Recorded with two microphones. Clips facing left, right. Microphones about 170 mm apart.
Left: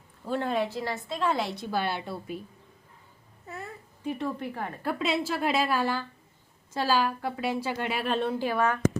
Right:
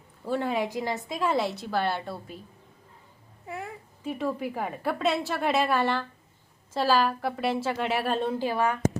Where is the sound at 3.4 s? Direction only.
15° right (ahead or behind).